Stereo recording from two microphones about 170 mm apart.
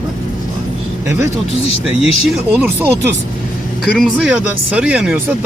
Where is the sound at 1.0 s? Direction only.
15° right (ahead or behind).